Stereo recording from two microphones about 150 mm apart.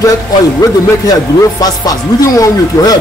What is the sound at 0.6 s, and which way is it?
Speech, 25° left (ahead or behind).